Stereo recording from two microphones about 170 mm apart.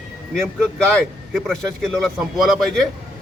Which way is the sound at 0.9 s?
Centre (ahead or behind).